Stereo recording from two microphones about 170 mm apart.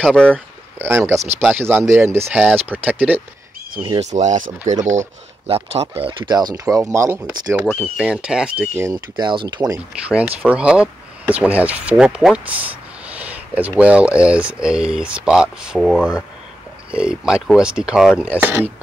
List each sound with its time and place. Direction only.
0.0 s speech: 5° left (ahead or behind)
0.7 s speech: 15° right (ahead or behind)
4.1 s speech: 45° right (ahead or behind); by 8.9 s 10° right (ahead or behind)
8.9 s speech: 25° right (ahead or behind)
10.0 s speech: 10° right (ahead or behind)